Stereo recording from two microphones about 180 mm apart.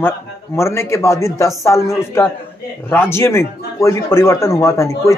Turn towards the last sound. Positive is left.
turn(degrees=15)  # may be behind; listen again after turning